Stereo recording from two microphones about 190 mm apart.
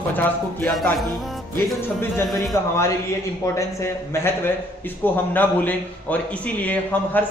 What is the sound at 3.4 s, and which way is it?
A man's voice, 15° left (ahead or behind).